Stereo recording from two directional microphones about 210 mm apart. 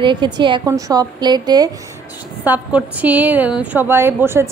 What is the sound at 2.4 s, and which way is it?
A woman's voice, 5° right (ahead or behind).